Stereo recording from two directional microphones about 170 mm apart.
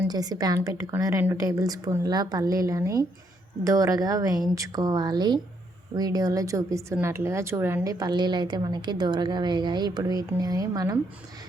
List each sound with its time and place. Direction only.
0.1 s a woman's voice: 25° right (ahead or behind)